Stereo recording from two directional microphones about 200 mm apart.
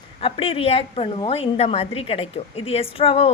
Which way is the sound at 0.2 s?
25° left (ahead or behind).